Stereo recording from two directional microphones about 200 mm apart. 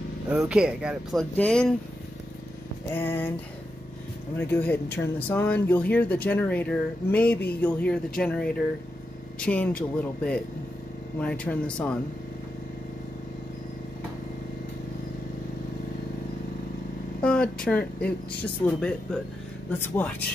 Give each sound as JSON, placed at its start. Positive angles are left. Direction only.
{"t": 0.3, "sound": "speech", "side_deg": -5}
{"t": 1.3, "sound": "speech", "side_deg": 5}
{"t": 2.9, "sound": "speech", "side_deg": 10}
{"t": 4.4, "sound": "speech", "side_deg": 10}
{"t": 17.2, "sound": "speech", "side_deg": 5}